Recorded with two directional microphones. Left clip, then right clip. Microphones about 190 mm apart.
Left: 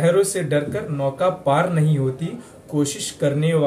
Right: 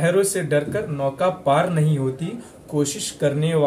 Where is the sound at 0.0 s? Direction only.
15° right (ahead or behind).